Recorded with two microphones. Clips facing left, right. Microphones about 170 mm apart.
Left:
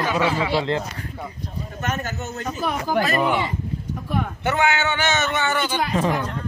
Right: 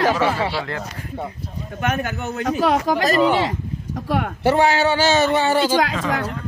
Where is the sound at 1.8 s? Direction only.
60° right (ahead or behind); by 2.9 s 85° right.